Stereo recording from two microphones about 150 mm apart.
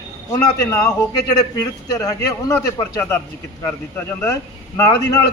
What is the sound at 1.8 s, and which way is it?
A man's voice, 25° left (ahead or behind).